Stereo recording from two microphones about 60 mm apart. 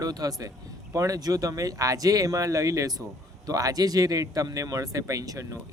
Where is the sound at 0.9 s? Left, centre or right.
Right.